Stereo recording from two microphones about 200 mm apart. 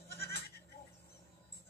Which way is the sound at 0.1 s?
55° left (ahead or behind).